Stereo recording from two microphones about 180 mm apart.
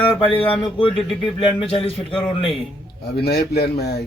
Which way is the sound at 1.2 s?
30° left (ahead or behind).